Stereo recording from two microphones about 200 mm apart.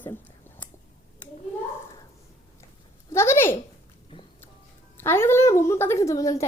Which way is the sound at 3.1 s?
10° left (ahead or behind).